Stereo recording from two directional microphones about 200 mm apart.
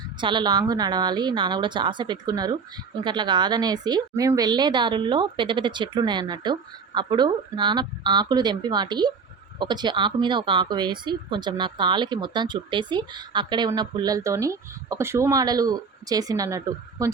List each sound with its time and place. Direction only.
0.2 s a woman's voice: 25° right (ahead or behind)